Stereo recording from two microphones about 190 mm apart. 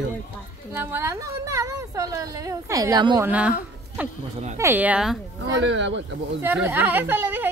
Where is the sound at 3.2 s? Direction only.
5° right (ahead or behind).